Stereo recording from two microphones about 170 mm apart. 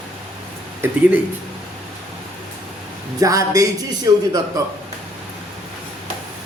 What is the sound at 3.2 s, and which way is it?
Speech, 20° right (ahead or behind).